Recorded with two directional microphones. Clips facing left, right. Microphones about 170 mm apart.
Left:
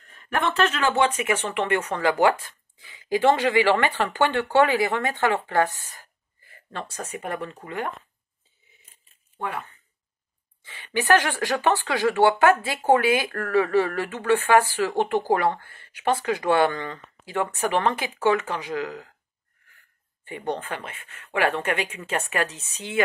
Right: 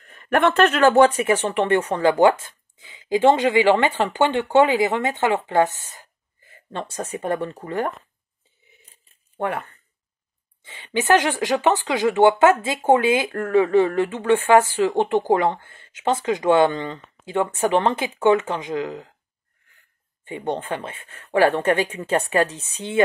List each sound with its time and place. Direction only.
0.2 s speech: 60° right (ahead or behind); by 7.9 s 35° right (ahead or behind)
9.4 s speech: 55° right (ahead or behind)
10.6 s speech: 25° right (ahead or behind)
20.2 s speech: 25° right (ahead or behind)